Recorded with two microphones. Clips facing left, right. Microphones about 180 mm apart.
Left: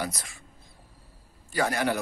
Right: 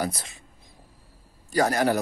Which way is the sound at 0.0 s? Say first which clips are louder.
Right 4 dB; 25° right (ahead or behind).